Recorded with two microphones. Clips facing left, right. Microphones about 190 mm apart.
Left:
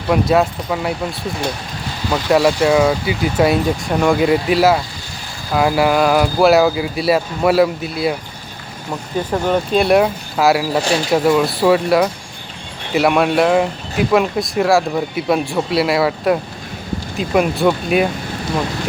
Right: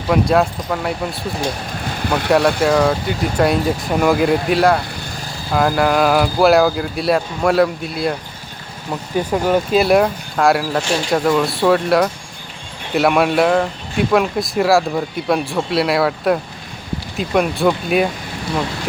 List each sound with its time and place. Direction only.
0.1 s speech: centre (ahead or behind)
2.0 s speech: 60° right (ahead or behind)
2.3 s speech: centre (ahead or behind)